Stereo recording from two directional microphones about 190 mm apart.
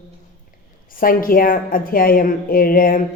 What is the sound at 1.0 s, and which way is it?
A woman's voice, 50° left (ahead or behind).